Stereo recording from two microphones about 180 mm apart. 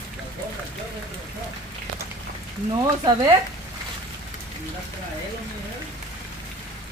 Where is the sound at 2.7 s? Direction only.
20° right (ahead or behind).